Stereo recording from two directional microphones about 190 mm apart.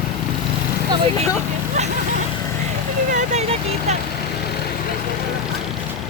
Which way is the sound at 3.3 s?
35° right (ahead or behind).